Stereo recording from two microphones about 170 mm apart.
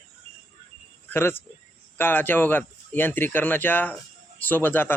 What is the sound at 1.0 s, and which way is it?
Speech, 10° left (ahead or behind).